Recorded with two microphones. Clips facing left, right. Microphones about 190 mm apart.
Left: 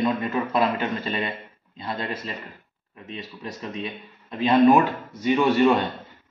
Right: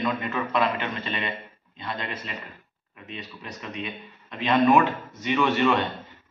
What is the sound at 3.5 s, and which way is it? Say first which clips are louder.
Speech: left 1 dB; 35° left (ahead or behind).